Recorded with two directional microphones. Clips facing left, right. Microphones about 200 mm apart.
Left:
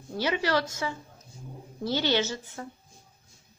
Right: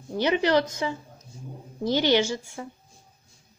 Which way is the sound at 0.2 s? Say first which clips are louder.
Right 5 dB; 20° right (ahead or behind).